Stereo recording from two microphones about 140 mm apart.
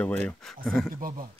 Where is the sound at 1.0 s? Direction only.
90° right.